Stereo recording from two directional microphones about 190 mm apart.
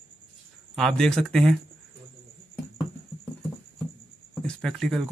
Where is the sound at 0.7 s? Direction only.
Centre (ahead or behind).